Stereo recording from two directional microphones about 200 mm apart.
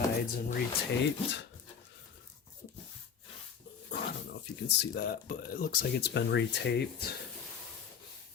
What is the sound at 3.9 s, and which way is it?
Speech, 55° left (ahead or behind).